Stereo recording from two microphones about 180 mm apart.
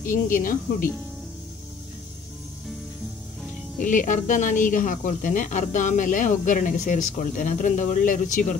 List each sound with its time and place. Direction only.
0.0 s speech: 50° left (ahead or behind)
3.8 s speech: 45° left (ahead or behind)